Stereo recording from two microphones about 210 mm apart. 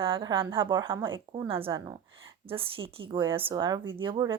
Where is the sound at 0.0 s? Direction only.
20° right (ahead or behind).